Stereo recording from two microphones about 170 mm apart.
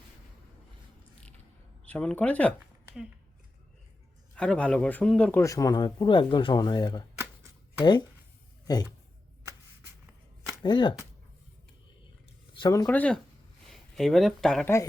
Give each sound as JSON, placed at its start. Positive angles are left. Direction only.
{"t": 1.8, "sound": "speech", "side_deg": 5}
{"t": 4.4, "sound": "speech", "side_deg": 5}
{"t": 5.4, "sound": "speech", "side_deg": 20}
{"t": 8.6, "sound": "speech", "side_deg": 20}
{"t": 10.6, "sound": "speech", "side_deg": 25}
{"t": 12.5, "sound": "speech", "side_deg": 20}